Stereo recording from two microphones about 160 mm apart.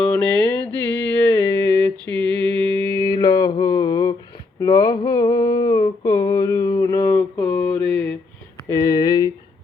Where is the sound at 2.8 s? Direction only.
15° left (ahead or behind).